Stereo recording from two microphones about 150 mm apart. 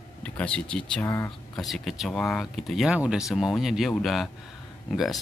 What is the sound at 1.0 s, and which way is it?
Speech, 15° left (ahead or behind).